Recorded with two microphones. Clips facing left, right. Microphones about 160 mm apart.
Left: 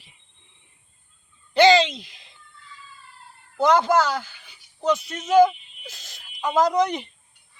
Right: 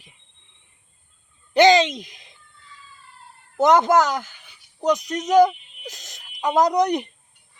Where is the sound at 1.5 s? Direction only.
20° right (ahead or behind).